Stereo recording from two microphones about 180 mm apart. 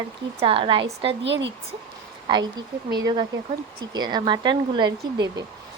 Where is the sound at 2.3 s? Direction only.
25° right (ahead or behind).